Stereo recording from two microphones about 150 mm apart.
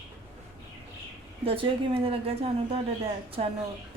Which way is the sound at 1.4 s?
35° right (ahead or behind).